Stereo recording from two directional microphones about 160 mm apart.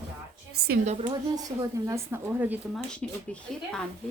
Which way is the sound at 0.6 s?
90° right.